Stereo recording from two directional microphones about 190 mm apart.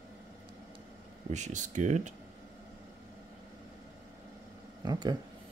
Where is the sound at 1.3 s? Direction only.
40° right (ahead or behind).